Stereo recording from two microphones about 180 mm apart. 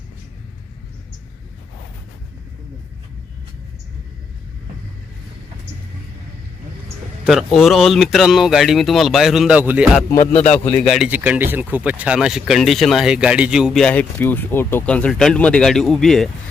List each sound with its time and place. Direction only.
7.3 s speech: centre (ahead or behind)
10.2 s music: 35° left (ahead or behind)
10.8 s speech: centre (ahead or behind)